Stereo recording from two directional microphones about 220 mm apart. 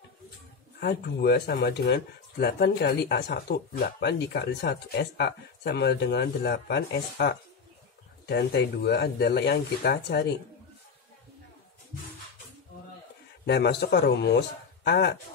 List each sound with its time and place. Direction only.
0.7 s speech: 45° left (ahead or behind)
13.5 s speech: 50° left (ahead or behind)